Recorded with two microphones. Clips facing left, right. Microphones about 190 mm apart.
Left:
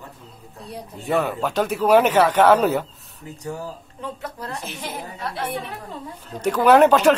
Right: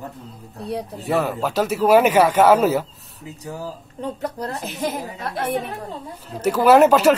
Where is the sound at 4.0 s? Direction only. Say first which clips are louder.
Right 6 dB; 40° right (ahead or behind).